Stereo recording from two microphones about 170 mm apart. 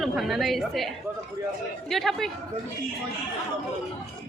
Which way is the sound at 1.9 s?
Centre (ahead or behind).